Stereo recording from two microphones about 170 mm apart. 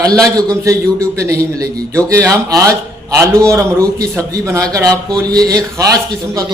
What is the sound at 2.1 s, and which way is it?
A man's voice, 20° right (ahead or behind).